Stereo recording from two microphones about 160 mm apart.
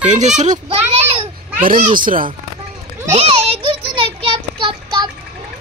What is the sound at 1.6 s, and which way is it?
Speech, 55° right (ahead or behind).